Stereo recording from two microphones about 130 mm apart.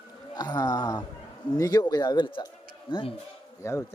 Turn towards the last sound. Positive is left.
turn(degrees=20)  # may be behind; listen again after turning